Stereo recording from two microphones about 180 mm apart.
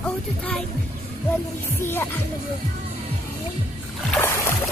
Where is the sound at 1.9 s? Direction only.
10° left (ahead or behind).